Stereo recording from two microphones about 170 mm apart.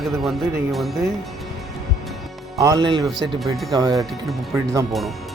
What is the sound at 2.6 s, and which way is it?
Speech, 25° right (ahead or behind).